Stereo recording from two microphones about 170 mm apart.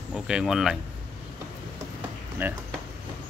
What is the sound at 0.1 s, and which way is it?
Speech, centre (ahead or behind).